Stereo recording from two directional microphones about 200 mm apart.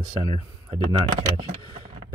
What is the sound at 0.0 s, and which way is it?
Speech, 25° right (ahead or behind).